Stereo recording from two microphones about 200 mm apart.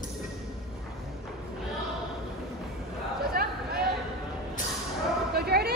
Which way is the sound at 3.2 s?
50° right (ahead or behind).